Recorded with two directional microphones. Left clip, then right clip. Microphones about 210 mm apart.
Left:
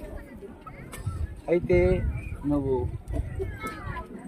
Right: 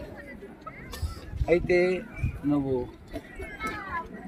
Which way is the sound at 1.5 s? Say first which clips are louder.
Even; 20° right (ahead or behind).